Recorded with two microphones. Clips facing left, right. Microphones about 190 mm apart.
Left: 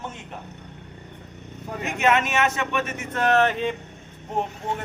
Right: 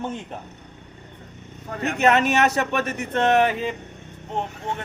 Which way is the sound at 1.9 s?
35° right (ahead or behind).